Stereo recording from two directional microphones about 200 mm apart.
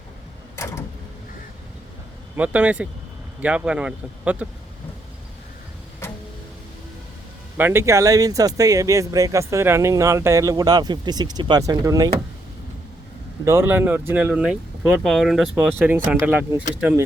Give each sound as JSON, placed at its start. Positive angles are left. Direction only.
{"t": 0.5, "sound": "mechanisms", "side_deg": 15}
{"t": 2.3, "sound": "speech", "side_deg": -5}
{"t": 6.0, "sound": "tick-tock", "side_deg": 15}
{"t": 7.5, "sound": "speech", "side_deg": -10}
{"t": 13.4, "sound": "speech", "side_deg": -15}